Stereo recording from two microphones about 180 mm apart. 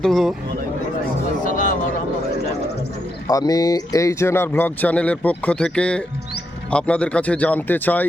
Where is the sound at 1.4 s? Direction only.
50° left (ahead or behind).